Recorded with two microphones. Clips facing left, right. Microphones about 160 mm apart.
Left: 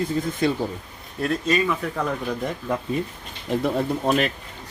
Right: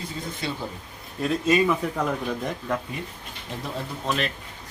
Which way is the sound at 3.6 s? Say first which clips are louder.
Left 8 dB; 55° left (ahead or behind).